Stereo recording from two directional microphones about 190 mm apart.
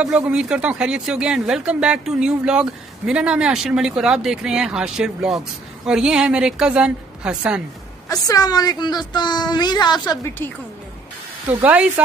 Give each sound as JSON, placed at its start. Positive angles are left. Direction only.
{"t": 0.0, "sound": "speech", "side_deg": -5}
{"t": 8.1, "sound": "a woman's voice", "side_deg": 20}
{"t": 10.0, "sound": "a woman's voice", "side_deg": 10}
{"t": 11.6, "sound": "speech", "side_deg": -5}